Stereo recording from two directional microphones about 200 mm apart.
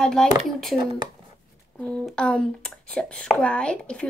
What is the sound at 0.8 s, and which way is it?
Speech, 20° right (ahead or behind).